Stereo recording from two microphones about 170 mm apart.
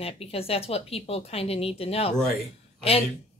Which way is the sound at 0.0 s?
35° left (ahead or behind).